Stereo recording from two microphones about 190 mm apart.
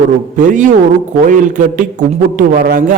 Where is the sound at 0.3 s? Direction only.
40° right (ahead or behind).